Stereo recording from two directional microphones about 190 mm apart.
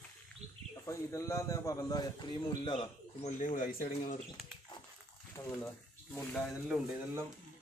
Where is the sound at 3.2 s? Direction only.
40° left (ahead or behind).